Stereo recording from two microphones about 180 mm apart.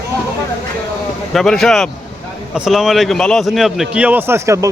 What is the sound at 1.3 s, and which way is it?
A man's voice, centre (ahead or behind).